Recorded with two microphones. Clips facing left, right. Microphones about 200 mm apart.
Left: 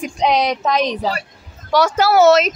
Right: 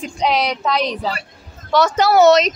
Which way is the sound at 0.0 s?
20° left (ahead or behind).